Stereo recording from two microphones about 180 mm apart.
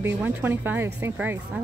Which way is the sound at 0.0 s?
10° right (ahead or behind).